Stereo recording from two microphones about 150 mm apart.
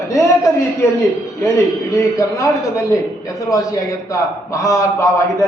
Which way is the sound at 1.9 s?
20° left (ahead or behind).